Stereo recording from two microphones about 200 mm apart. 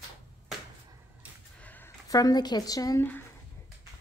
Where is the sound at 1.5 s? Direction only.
10° left (ahead or behind).